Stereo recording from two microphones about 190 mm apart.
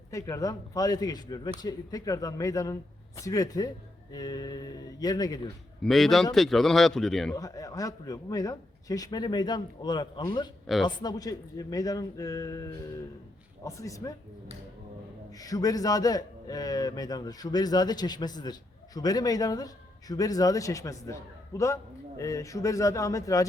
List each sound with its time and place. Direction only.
0.1 s a man's voice: 15° left (ahead or behind)
5.8 s speech: centre (ahead or behind)
7.3 s a man's voice: 20° left (ahead or behind)
15.3 s a man's voice: 20° left (ahead or behind)